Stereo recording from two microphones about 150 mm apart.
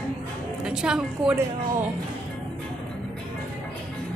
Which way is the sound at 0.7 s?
5° right (ahead or behind).